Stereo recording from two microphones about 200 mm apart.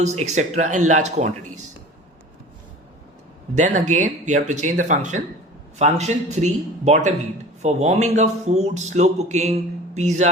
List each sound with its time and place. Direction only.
0.0 s speech: 35° right (ahead or behind)
3.5 s speech: 35° right (ahead or behind)